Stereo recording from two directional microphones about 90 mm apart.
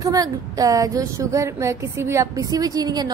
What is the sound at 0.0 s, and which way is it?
A woman's voice, 40° right (ahead or behind).